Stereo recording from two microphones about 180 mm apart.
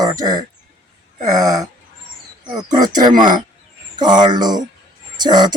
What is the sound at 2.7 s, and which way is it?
Speech, 20° right (ahead or behind).